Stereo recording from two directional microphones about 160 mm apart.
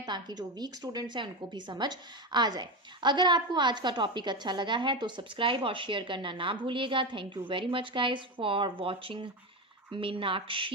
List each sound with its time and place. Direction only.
0.0 s a woman's voice: 25° right (ahead or behind)